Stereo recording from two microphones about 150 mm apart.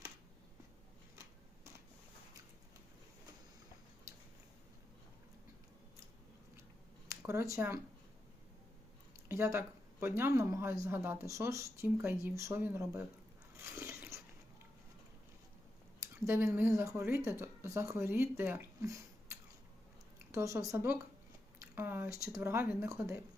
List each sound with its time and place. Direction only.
7.1 s speech: 20° right (ahead or behind)
9.3 s speech: 15° right (ahead or behind)
13.7 s biting: 15° right (ahead or behind)
16.0 s speech: 15° right (ahead or behind)